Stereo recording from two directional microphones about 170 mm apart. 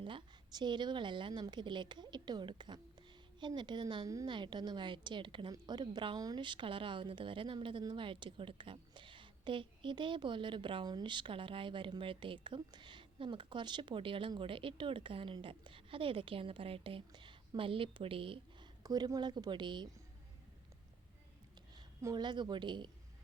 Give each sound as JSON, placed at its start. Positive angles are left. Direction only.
{"t": 0.0, "sound": "a woman's voice", "side_deg": -30}
{"t": 21.8, "sound": "a woman's voice", "side_deg": -25}